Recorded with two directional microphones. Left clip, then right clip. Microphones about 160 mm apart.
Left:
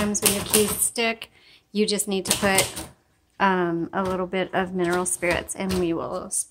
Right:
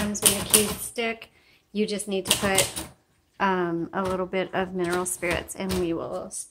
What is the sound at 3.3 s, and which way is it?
A woman's voice, 20° left (ahead or behind).